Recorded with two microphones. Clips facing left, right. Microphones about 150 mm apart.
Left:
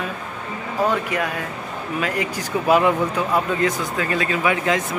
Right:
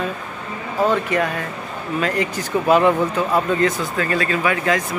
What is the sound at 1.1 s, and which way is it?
Speech, 10° left (ahead or behind).